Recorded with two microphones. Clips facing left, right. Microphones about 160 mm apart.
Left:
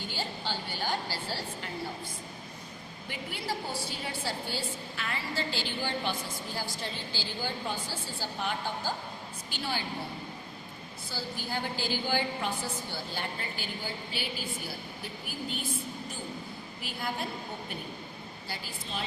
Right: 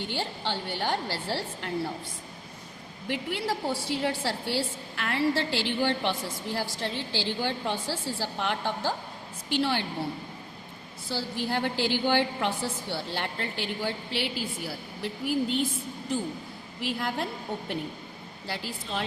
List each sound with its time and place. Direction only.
0.0 s a woman's voice: 65° right (ahead or behind)
3.1 s a woman's voice: 75° right (ahead or behind)
11.1 s a woman's voice: 75° right (ahead or behind)
16.8 s a woman's voice: 85° right
18.4 s a woman's voice: 75° right (ahead or behind)